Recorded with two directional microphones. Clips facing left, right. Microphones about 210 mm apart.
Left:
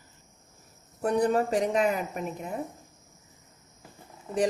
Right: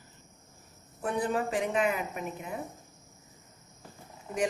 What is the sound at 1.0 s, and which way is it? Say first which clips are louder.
Speech: left 6 dB; 40° left (ahead or behind).